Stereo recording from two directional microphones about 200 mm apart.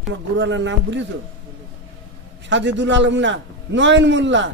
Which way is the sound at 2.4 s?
65° right (ahead or behind).